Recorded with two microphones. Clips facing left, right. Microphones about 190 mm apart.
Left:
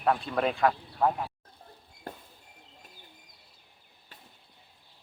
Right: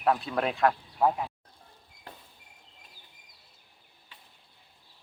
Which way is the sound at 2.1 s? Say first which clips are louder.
Left 6 dB; 45° left (ahead or behind).